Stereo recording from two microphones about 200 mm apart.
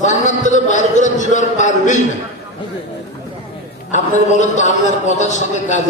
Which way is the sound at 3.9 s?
35° left (ahead or behind).